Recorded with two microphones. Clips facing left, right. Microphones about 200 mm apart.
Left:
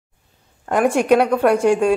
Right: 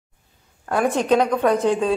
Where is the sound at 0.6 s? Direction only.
15° left (ahead or behind).